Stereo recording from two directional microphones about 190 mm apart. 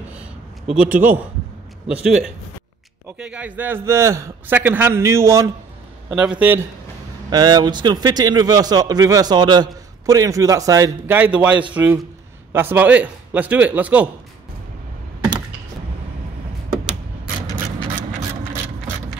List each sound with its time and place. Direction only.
0.1 s a sound: 5° right (ahead or behind)
1.9 s a man's voice: 5° right (ahead or behind)
7.2 s a man's voice: 20° right (ahead or behind)